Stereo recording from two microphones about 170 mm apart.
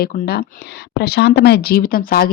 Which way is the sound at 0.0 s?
65° left (ahead or behind).